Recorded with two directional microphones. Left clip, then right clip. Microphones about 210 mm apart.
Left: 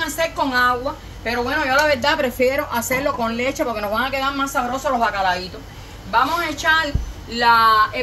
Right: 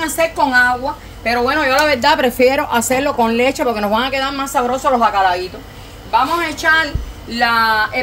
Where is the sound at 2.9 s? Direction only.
45° right (ahead or behind); by 4.4 s 60° right (ahead or behind).